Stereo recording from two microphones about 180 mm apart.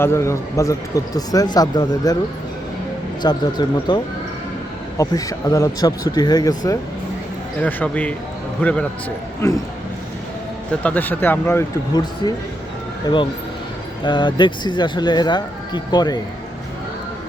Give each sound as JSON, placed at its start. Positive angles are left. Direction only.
{"t": 0.0, "sound": "speech", "side_deg": 15}
{"t": 3.2, "sound": "speech", "side_deg": 25}
{"t": 7.6, "sound": "speech", "side_deg": 10}
{"t": 9.4, "sound": "speech", "side_deg": 15}
{"t": 10.8, "sound": "speech", "side_deg": 10}